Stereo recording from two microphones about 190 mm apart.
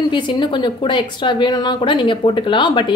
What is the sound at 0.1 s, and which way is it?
Speech, 25° left (ahead or behind).